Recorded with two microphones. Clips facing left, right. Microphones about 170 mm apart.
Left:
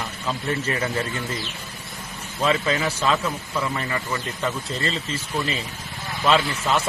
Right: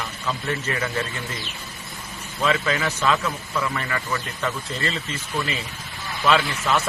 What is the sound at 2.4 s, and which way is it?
A man's voice, 30° left (ahead or behind).